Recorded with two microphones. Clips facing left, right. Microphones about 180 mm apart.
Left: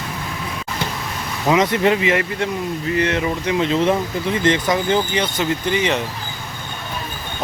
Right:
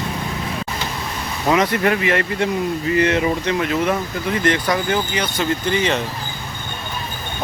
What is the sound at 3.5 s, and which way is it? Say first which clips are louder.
Speech: left 2 dB; 25° left (ahead or behind).